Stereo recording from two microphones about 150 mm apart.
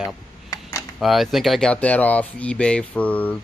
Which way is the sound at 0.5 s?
25° left (ahead or behind).